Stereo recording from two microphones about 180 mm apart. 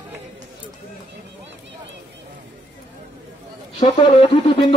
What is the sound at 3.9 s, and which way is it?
Speech, 30° left (ahead or behind).